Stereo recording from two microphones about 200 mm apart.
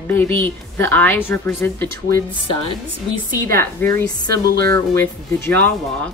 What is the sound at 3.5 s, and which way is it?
A woman's voice, 10° left (ahead or behind).